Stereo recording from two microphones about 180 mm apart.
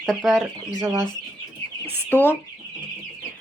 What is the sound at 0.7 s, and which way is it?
Speech, 15° right (ahead or behind).